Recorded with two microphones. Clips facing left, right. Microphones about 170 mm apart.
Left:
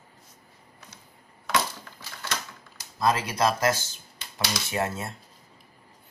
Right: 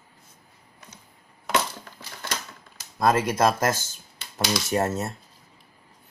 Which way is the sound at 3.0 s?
50° right (ahead or behind).